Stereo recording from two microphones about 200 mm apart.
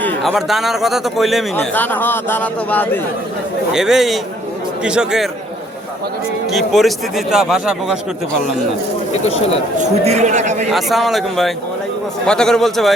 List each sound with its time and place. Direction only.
0.2 s a man's voice: centre (ahead or behind)
1.5 s a man's voice: 10° left (ahead or behind)
3.7 s a man's voice: centre (ahead or behind)
6.5 s a man's voice: centre (ahead or behind)
10.0 s a man's voice: 35° right (ahead or behind)
10.7 s a man's voice: centre (ahead or behind)